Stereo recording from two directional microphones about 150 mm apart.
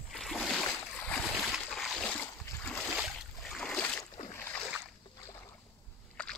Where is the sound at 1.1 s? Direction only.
Centre (ahead or behind).